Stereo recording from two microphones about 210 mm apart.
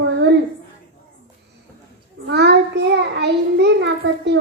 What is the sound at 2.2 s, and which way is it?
A child's voice, 50° right (ahead or behind).